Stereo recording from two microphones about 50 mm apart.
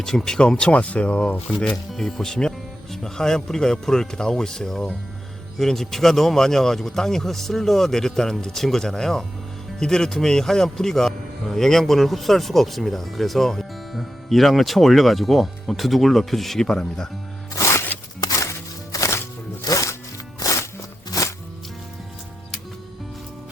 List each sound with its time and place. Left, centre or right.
0.0 s speech: centre
0.3 s speech: centre
1.5 s speech: centre
17.5 s music: left
18.9 s music: left